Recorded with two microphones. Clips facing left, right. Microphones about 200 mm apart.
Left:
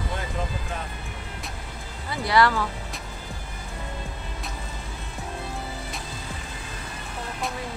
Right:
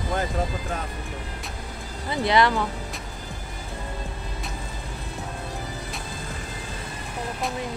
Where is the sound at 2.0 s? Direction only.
20° right (ahead or behind).